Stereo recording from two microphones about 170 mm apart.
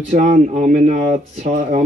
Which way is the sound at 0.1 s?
45° right (ahead or behind).